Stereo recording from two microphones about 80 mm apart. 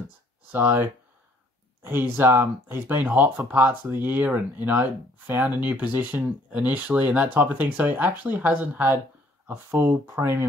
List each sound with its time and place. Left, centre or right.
0.5 s speech: right
3.0 s speech: right
9.5 s speech: right